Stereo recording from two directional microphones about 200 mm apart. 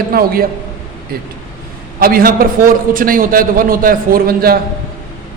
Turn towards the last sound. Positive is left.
turn(degrees=-50)  # may be behind; listen again after turning